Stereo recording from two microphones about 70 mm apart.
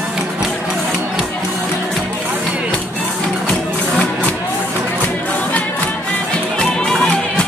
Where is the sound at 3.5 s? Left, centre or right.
Centre.